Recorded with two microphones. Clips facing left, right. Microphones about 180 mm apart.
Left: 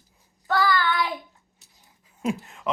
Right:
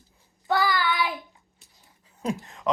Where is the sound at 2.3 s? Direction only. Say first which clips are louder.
Left 1 dB; 5° left (ahead or behind).